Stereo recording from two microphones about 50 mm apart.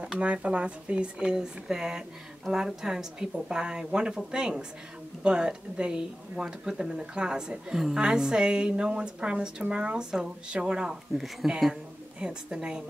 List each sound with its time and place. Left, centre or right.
0.2 s speech: right
11.4 s a woman's voice: centre
12.2 s speech: centre